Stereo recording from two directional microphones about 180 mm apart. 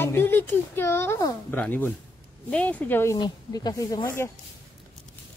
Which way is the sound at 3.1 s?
25° left (ahead or behind).